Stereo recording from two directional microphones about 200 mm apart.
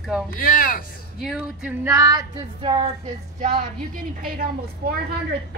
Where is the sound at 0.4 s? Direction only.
45° left (ahead or behind).